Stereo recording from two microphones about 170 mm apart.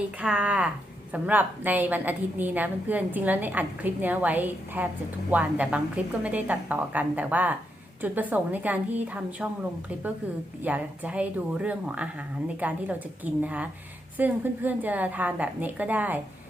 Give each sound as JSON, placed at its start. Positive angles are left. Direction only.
{"t": 0.2, "sound": "a woman's voice", "side_deg": -5}
{"t": 10.6, "sound": "a woman's voice", "side_deg": -10}